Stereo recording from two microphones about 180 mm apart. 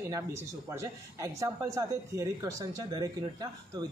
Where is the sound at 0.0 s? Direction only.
15° right (ahead or behind).